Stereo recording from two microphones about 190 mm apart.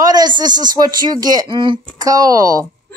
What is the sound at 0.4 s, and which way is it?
Speech, 20° right (ahead or behind).